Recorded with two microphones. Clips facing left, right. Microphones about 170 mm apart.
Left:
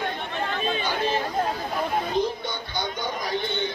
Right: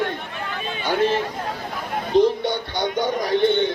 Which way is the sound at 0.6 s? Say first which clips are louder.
Left 4 dB; 30° left (ahead or behind).